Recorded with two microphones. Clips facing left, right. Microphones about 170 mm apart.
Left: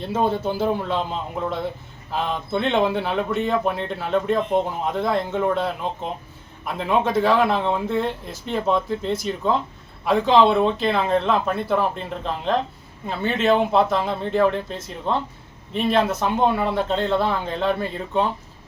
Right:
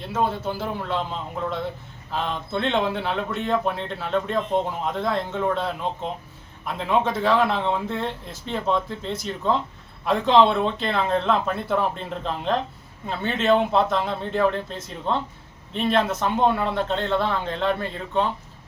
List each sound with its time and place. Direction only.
0.1 s a man's voice: 20° left (ahead or behind)
2.1 s a man's voice: 10° left (ahead or behind)
6.7 s a man's voice: 5° left (ahead or behind)